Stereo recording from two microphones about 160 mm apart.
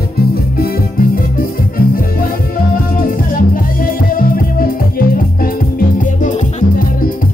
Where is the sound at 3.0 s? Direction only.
60° left (ahead or behind).